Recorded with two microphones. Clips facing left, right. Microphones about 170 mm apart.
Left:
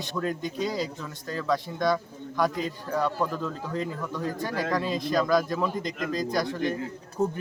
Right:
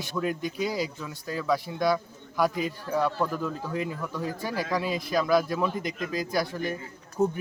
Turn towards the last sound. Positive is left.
turn(degrees=-5)  # may be behind; listen again after turning